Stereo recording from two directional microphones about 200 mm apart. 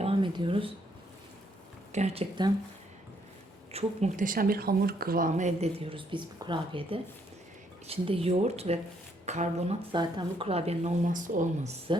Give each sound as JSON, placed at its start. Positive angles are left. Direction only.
{"t": 0.0, "sound": "a sound", "side_deg": -25}
{"t": 1.9, "sound": "speech", "side_deg": -35}
{"t": 3.7, "sound": "speech", "side_deg": -30}